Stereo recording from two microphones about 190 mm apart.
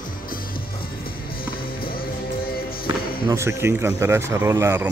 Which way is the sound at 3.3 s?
15° right (ahead or behind).